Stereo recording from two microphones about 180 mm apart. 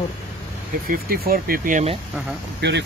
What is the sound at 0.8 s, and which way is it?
Speech, 55° right (ahead or behind).